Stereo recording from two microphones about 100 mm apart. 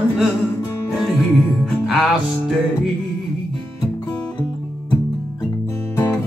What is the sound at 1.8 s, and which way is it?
Music, 5° right (ahead or behind).